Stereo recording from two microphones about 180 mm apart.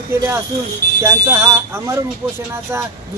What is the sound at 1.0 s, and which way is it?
Speech, 15° right (ahead or behind).